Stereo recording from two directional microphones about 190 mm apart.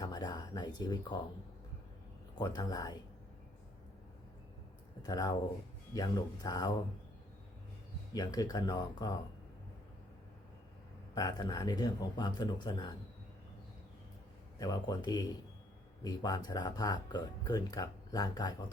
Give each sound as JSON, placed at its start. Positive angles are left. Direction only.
{"t": 0.0, "sound": "speech", "side_deg": 20}
{"t": 2.3, "sound": "speech", "side_deg": 20}
{"t": 5.0, "sound": "speech", "side_deg": 20}
{"t": 8.1, "sound": "speech", "side_deg": 20}
{"t": 11.1, "sound": "speech", "side_deg": 20}
{"t": 14.6, "sound": "speech", "side_deg": 20}